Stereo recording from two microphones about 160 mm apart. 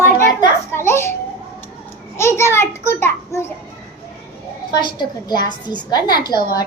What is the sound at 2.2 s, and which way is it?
A child's voice, 15° left (ahead or behind).